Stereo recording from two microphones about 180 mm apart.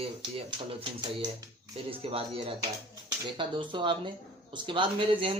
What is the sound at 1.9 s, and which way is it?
Speech, 30° right (ahead or behind).